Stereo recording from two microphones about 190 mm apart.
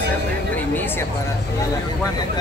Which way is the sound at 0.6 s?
10° left (ahead or behind).